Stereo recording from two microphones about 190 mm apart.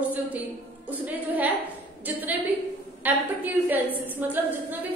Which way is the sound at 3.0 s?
10° right (ahead or behind).